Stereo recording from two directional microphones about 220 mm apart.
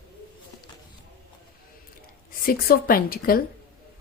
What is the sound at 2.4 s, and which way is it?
Speech, 40° left (ahead or behind).